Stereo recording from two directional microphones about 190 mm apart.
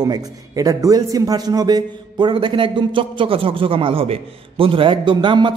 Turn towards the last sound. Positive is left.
turn(degrees=-25)  # may be behind; listen again after turning